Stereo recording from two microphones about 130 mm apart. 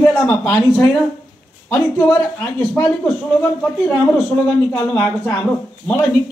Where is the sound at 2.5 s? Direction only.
10° left (ahead or behind).